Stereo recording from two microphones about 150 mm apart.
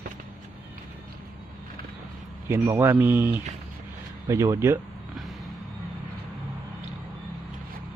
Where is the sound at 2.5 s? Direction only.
15° right (ahead or behind).